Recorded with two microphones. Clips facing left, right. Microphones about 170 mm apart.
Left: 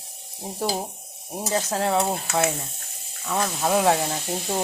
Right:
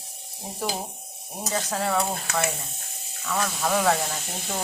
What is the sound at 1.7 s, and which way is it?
Speech, 25° left (ahead or behind).